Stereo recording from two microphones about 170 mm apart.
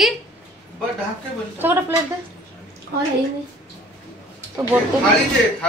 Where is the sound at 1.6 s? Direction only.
10° right (ahead or behind).